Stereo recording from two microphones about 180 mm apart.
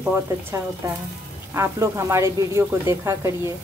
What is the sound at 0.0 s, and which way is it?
Speech, 10° right (ahead or behind).